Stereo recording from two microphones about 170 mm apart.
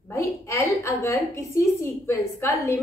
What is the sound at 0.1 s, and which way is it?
A woman's voice, 15° left (ahead or behind).